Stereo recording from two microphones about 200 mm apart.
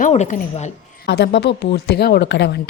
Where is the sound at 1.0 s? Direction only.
55° left (ahead or behind).